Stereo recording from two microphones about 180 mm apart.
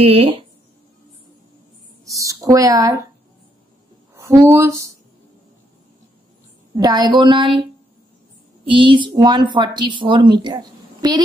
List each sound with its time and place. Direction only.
0.0 s speech: 30° right (ahead or behind)
2.0 s speech: 20° right (ahead or behind)
4.1 s speech: 15° right (ahead or behind)
6.7 s a woman's voice: 20° right (ahead or behind)
8.6 s a woman's voice: 25° right (ahead or behind)